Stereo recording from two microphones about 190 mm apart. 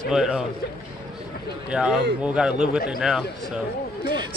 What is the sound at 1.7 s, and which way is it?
Speech, 5° right (ahead or behind).